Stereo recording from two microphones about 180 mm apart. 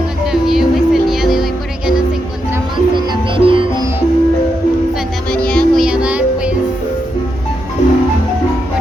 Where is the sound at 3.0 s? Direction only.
30° right (ahead or behind).